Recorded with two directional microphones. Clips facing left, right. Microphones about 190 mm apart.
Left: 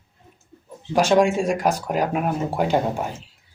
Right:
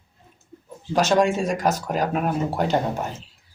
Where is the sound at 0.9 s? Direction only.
10° left (ahead or behind).